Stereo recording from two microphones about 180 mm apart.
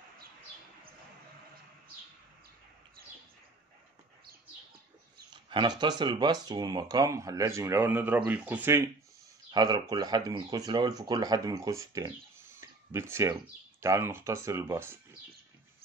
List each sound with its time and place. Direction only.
5.3 s speech: 25° right (ahead or behind)